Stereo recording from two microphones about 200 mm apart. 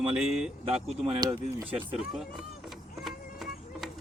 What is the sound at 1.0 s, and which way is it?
Speech, 25° right (ahead or behind).